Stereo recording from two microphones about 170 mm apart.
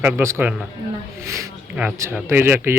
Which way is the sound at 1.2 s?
15° right (ahead or behind).